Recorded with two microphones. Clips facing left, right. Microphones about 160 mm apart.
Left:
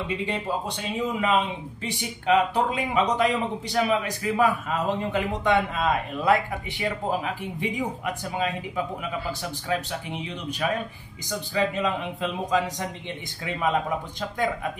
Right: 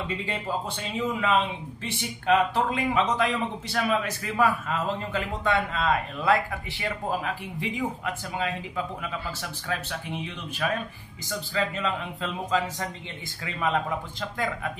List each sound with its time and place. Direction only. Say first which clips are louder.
0.9 s a man's voice: left 1 dB; 15° left (ahead or behind)
7.7 s a man's voice: left 1 dB; 15° left (ahead or behind)